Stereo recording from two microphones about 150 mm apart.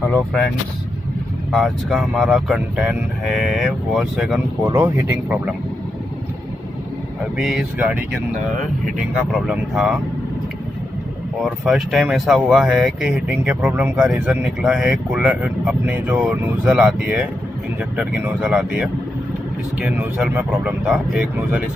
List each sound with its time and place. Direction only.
1.5 s speech: centre (ahead or behind)
4.6 s speech: 20° right (ahead or behind)
7.3 s speech: 5° right (ahead or behind)
9.3 s speech: 5° right (ahead or behind)
11.4 s speech: centre (ahead or behind)